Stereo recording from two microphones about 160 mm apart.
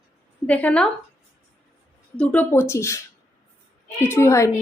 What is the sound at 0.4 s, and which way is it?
Speech, 10° left (ahead or behind).